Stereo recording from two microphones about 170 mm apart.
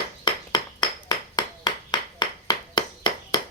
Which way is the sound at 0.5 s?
25° left (ahead or behind).